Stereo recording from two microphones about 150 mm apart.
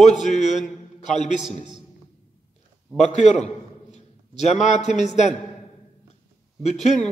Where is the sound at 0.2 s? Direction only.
55° left (ahead or behind).